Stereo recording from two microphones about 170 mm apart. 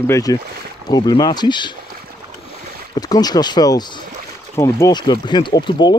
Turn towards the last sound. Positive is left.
turn(degrees=25)  # may be behind; listen again after turning